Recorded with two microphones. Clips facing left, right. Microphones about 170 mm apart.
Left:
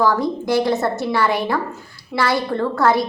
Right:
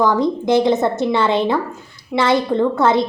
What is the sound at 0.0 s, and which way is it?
A woman's voice, 20° right (ahead or behind).